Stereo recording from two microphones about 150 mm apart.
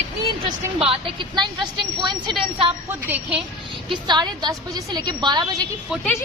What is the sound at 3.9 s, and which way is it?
A woman's voice, 30° right (ahead or behind).